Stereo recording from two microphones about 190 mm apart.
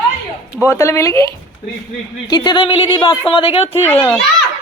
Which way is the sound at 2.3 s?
20° left (ahead or behind).